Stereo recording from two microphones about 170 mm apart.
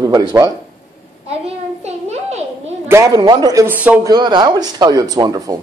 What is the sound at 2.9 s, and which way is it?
A man's voice, 20° right (ahead or behind).